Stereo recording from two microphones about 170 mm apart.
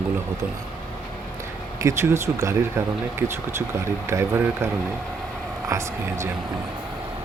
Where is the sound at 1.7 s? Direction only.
15° right (ahead or behind).